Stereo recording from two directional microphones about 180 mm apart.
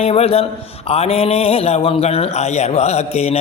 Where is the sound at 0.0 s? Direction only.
35° left (ahead or behind).